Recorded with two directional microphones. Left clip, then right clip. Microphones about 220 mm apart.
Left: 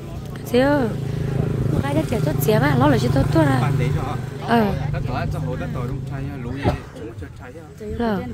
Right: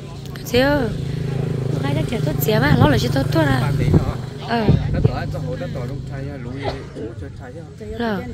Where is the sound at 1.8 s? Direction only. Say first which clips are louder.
Left 2 dB; 25° left (ahead or behind).